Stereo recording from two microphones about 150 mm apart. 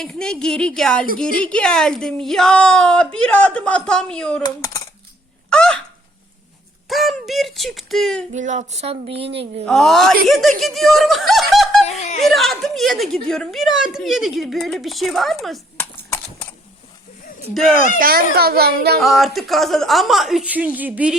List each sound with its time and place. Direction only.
0.0 s a woman's voice: 5° left (ahead or behind)
4.4 s speech: 25° left (ahead or behind)
5.5 s a sound: 5° left (ahead or behind)
6.8 s a sound: centre (ahead or behind)
8.3 s speech: 55° right (ahead or behind)
9.6 s a woman's voice: centre (ahead or behind)
11.9 s snicker: 50° left (ahead or behind)
12.2 s a woman's voice: centre (ahead or behind)
15.8 s horse: 10° left (ahead or behind)
17.5 s a woman's voice: centre (ahead or behind)
18.0 s a child's voice: 85° right
19.0 s a woman's voice: centre (ahead or behind)